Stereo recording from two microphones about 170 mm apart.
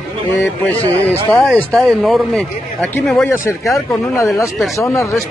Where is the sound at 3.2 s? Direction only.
15° left (ahead or behind).